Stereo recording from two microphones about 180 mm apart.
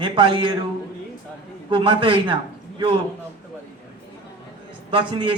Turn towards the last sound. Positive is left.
turn(degrees=-30)  # may be behind; listen again after turning